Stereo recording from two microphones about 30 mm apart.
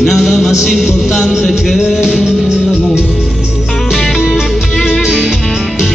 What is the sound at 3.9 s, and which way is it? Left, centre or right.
Music, centre.